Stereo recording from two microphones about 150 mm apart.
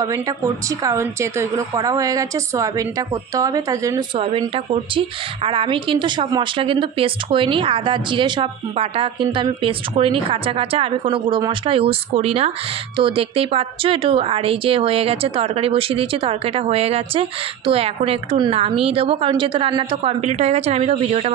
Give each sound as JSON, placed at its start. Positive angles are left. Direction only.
{"t": 0.7, "sound": "a woman's voice", "side_deg": -20}
{"t": 4.2, "sound": "a woman's voice", "side_deg": -40}